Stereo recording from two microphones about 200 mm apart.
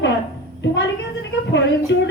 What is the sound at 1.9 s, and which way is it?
Speech, 65° left (ahead or behind).